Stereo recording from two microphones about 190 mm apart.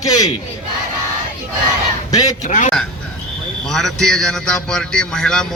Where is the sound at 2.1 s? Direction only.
20° left (ahead or behind).